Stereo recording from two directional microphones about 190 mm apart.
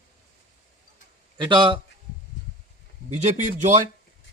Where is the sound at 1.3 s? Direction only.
25° right (ahead or behind).